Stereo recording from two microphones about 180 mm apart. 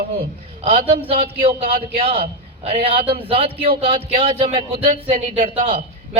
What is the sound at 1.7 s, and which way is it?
Speech, 55° right (ahead or behind).